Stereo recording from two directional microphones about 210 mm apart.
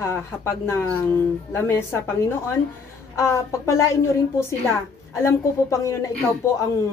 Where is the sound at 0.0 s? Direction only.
10° left (ahead or behind).